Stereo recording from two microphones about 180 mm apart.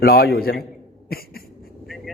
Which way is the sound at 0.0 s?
60° left (ahead or behind).